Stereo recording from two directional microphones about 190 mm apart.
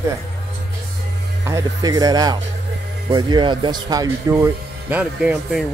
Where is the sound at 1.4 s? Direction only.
15° right (ahead or behind).